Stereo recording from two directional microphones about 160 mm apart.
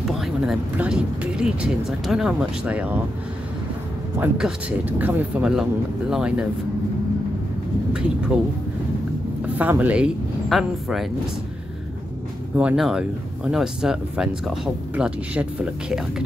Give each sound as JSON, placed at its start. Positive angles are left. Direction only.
{"t": 0.0, "sound": "speech", "side_deg": 0}
{"t": 4.2, "sound": "speech", "side_deg": -5}
{"t": 9.6, "sound": "speech", "side_deg": -10}
{"t": 12.5, "sound": "speech", "side_deg": -5}